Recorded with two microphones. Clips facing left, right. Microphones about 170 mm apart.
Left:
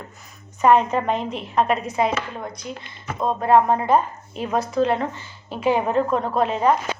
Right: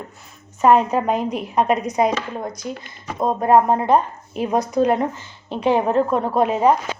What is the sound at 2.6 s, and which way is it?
Speech, 35° right (ahead or behind).